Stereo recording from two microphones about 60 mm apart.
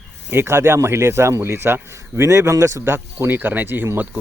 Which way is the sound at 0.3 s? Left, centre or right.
Right.